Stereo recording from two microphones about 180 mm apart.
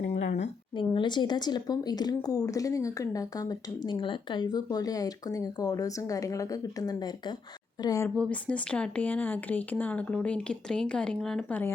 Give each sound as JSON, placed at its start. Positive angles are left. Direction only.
{"t": 0.8, "sound": "speech", "side_deg": 25}
{"t": 8.1, "sound": "speech", "side_deg": 5}